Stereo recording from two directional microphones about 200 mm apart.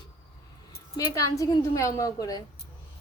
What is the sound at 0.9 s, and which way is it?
A woman's voice, 15° left (ahead or behind).